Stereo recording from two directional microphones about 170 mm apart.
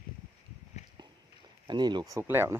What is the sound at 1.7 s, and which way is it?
Speech, 25° right (ahead or behind).